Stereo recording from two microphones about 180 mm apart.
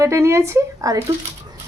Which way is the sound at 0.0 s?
15° right (ahead or behind).